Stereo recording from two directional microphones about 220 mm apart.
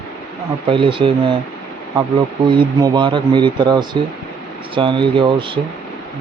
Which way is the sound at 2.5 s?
20° right (ahead or behind).